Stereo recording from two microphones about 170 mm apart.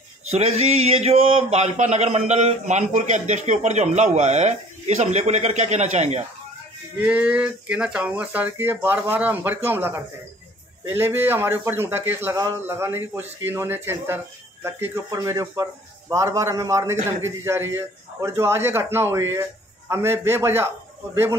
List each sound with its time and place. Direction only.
0.3 s speech: 40° right (ahead or behind)
7.0 s a man's voice: 5° right (ahead or behind)